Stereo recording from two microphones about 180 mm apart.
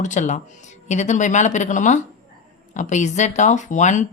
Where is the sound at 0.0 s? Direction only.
40° left (ahead or behind).